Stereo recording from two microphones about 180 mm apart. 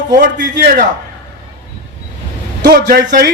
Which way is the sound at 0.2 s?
50° right (ahead or behind).